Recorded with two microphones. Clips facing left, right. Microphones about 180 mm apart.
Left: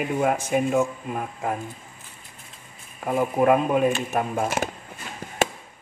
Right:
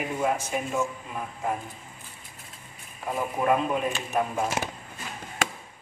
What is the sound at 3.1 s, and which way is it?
Speech, 55° left (ahead or behind).